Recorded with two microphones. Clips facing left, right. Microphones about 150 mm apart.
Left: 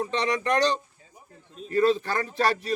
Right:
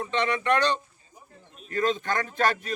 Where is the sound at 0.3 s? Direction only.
40° left (ahead or behind).